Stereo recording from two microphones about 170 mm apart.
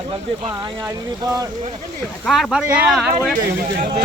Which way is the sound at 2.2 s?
Centre (ahead or behind).